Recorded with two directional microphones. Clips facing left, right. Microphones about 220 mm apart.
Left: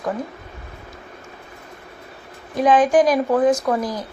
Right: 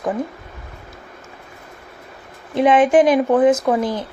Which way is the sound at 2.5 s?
25° right (ahead or behind).